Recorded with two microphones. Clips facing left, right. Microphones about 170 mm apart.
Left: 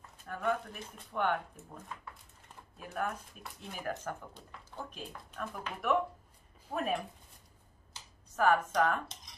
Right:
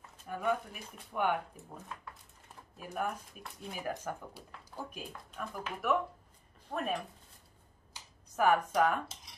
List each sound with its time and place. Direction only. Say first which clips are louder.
0.3 s speech: even; 10° right (ahead or behind)
2.8 s speech: even; 10° right (ahead or behind)
7.9 s a sound: right 1 dB; 10° right (ahead or behind)